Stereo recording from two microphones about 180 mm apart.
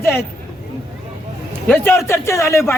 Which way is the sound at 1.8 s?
15° left (ahead or behind).